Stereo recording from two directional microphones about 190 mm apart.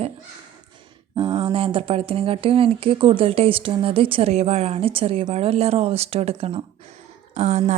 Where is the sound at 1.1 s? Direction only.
25° right (ahead or behind).